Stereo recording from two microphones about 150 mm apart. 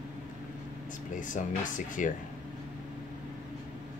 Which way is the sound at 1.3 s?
60° left (ahead or behind).